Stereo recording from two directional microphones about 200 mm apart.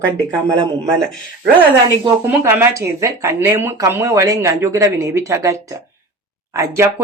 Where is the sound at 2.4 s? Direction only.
10° right (ahead or behind).